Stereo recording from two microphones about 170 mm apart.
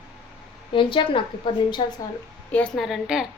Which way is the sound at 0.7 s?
30° left (ahead or behind).